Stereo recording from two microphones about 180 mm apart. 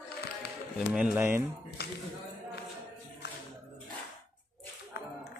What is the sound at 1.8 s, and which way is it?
Speech, 60° left (ahead or behind).